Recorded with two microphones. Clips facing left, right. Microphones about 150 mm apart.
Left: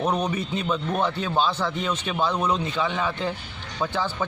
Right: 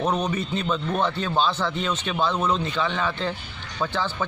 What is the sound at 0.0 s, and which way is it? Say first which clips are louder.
A man's voice: even; 10° left (ahead or behind).